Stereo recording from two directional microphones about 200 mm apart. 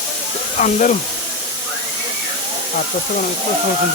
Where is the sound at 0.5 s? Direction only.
40° left (ahead or behind).